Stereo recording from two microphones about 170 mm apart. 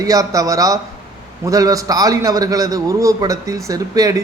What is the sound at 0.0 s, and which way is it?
A man's voice, 20° right (ahead or behind).